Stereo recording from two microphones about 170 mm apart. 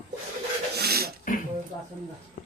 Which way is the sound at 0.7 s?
70° right (ahead or behind).